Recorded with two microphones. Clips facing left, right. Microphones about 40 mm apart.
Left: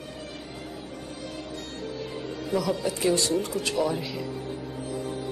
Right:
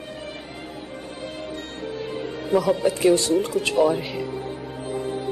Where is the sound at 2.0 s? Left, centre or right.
Right.